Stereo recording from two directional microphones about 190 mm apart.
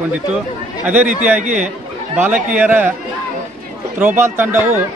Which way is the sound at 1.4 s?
40° right (ahead or behind).